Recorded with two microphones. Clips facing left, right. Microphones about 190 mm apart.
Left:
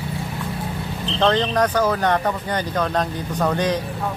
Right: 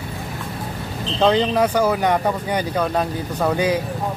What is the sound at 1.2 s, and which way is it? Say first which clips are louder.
Speech: right 2 dB; 10° right (ahead or behind).